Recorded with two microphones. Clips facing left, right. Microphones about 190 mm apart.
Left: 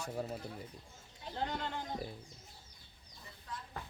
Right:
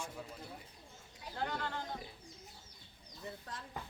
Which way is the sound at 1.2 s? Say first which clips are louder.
Left 1 dB; 20° left (ahead or behind).